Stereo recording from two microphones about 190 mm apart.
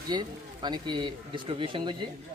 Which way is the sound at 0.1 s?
20° right (ahead or behind).